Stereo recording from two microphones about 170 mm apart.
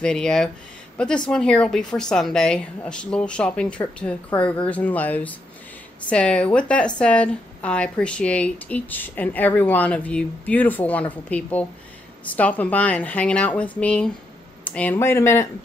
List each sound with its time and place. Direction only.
0.0 s a woman's voice: 5° left (ahead or behind)